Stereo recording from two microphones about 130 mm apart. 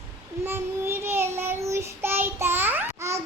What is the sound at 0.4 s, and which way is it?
Child singing, 15° right (ahead or behind).